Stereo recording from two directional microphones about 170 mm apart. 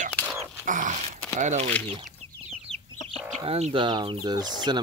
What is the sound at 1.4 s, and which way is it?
Speech, 45° right (ahead or behind).